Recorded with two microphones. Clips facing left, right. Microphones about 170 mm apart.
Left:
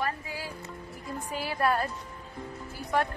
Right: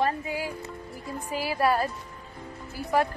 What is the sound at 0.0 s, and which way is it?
Music, 20° right (ahead or behind).